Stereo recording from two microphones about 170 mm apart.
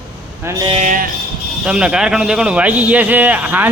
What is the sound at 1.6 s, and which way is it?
A man's voice, 5° right (ahead or behind).